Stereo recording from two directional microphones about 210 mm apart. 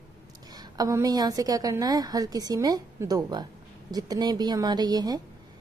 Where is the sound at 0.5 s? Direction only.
20° right (ahead or behind).